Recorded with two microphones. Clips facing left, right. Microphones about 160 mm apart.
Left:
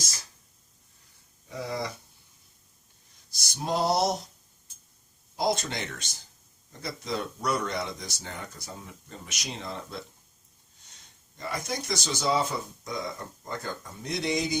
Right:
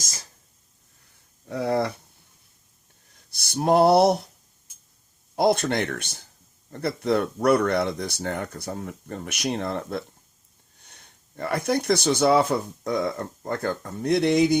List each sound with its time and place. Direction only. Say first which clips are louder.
1.5 s speech: right 9 dB; 60° right (ahead or behind)
3.2 s a sound: right 10 dB; 60° right (ahead or behind)
5.4 s speech: right 7 dB; 60° right (ahead or behind)